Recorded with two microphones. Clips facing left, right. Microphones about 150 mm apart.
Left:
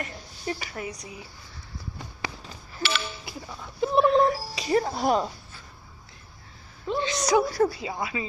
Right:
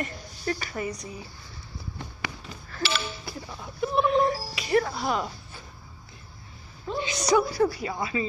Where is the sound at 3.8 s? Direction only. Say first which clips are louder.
Left 3 dB; 35° left (ahead or behind).